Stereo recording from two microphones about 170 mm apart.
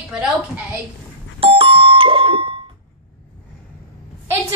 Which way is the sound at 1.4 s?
35° right (ahead or behind).